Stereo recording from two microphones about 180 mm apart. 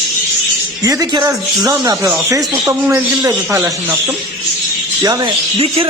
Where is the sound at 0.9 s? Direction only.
20° right (ahead or behind).